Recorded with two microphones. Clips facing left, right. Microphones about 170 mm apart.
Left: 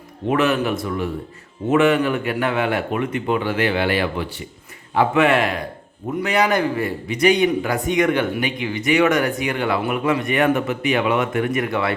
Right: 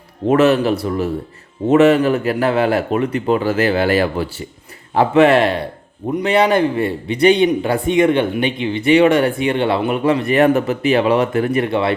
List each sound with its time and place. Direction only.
0.3 s a man's voice: 40° right (ahead or behind)